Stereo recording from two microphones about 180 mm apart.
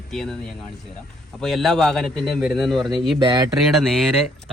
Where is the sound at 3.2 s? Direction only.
25° right (ahead or behind).